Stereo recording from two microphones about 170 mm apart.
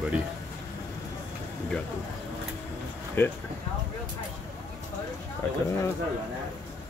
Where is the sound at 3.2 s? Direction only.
15° left (ahead or behind).